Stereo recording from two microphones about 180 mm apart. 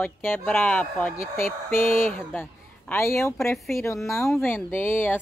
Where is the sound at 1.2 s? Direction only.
50° left (ahead or behind).